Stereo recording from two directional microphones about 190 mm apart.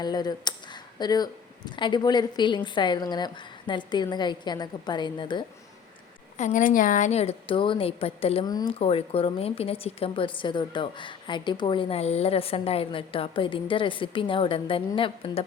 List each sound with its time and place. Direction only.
0.0 s a woman's voice: 20° left (ahead or behind)
6.3 s a woman's voice: 40° left (ahead or behind)